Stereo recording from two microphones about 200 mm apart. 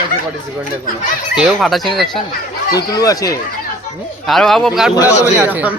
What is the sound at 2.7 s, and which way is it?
Speech, 20° left (ahead or behind).